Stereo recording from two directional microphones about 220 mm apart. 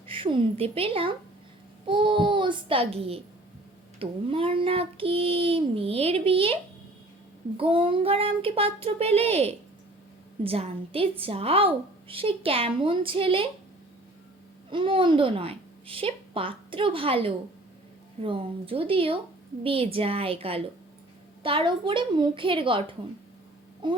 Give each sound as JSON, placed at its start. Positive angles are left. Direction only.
{"t": 0.1, "sound": "child singing", "side_deg": -25}
{"t": 14.7, "sound": "a woman's voice", "side_deg": -25}
{"t": 18.2, "sound": "child singing", "side_deg": -25}